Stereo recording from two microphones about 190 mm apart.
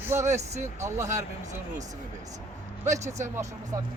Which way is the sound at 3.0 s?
40° right (ahead or behind).